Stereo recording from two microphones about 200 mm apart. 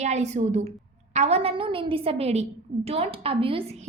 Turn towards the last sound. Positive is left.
turn(degrees=-30)  # may be behind; listen again after turning